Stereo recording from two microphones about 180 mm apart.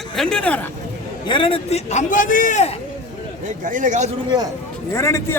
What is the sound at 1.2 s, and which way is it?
A man's voice, 30° left (ahead or behind).